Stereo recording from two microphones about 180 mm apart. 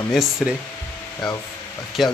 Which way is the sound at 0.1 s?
5° right (ahead or behind).